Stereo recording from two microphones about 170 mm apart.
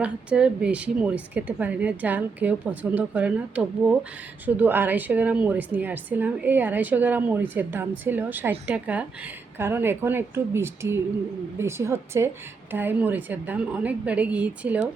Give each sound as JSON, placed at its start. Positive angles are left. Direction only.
{"t": 0.0, "sound": "a woman's voice", "side_deg": -5}